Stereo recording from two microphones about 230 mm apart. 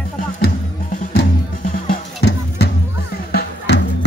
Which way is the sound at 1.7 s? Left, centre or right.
Left.